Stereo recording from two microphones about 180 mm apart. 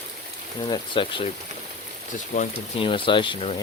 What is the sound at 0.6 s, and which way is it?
Speech, 25° left (ahead or behind).